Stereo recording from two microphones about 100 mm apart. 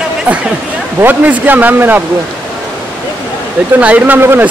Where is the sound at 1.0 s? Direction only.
15° right (ahead or behind).